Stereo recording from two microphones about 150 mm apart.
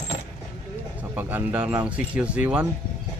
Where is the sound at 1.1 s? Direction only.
10° right (ahead or behind).